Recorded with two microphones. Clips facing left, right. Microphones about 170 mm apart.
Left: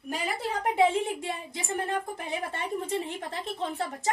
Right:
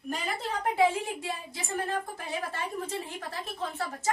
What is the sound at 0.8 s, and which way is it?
A woman's voice, 25° left (ahead or behind).